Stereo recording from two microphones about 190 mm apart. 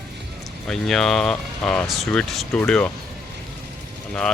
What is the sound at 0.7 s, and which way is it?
Speech, centre (ahead or behind).